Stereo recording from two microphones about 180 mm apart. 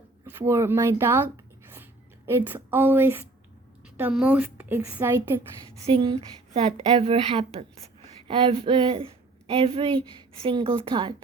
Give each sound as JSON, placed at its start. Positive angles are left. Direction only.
{"t": 0.3, "sound": "a woman's voice", "side_deg": -15}
{"t": 5.8, "sound": "a woman's voice", "side_deg": -30}